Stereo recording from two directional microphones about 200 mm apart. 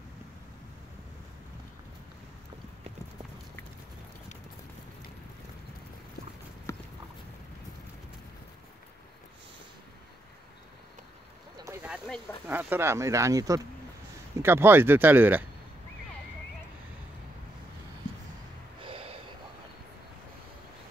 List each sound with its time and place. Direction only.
6.7 s clip-clop: 15° left (ahead or behind)
11.5 s speech: 15° right (ahead or behind)
18.8 s gasp: 25° right (ahead or behind)